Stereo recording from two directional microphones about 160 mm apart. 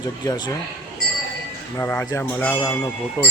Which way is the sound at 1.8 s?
10° left (ahead or behind).